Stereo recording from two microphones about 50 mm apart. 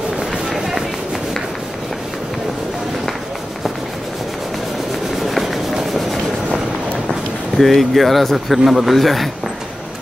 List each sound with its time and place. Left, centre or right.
0.5 s a sound: centre
5.2 s rub: centre
7.5 s speech: centre